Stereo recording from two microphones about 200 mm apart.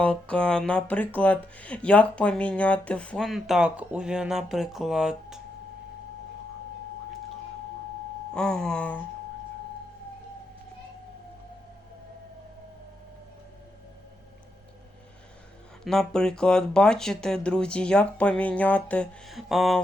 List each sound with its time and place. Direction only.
0.0 s speech: 5° left (ahead or behind)
8.3 s speech: 5° left (ahead or behind)
15.8 s speech: centre (ahead or behind)